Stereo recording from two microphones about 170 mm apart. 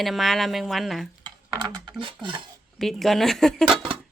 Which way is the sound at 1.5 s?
30° right (ahead or behind).